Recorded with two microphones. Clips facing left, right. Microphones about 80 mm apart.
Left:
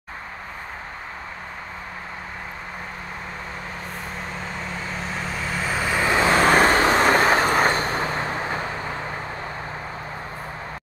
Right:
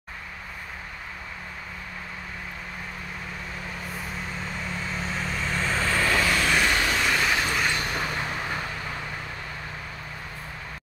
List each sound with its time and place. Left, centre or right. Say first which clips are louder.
4.4 s vehicle: left 2 dB; centre; by 6.3 s left
6.3 s vehicle: left 7 dB; left